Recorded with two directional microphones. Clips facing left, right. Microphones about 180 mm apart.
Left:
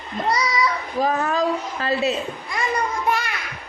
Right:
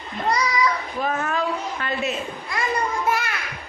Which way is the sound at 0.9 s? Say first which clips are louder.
Left 4 dB; 35° left (ahead or behind).